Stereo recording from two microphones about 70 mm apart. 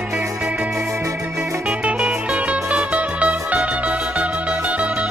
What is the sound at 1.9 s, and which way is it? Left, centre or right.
Music, centre.